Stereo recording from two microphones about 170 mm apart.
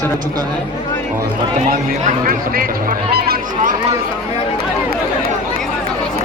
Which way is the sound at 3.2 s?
65° right (ahead or behind).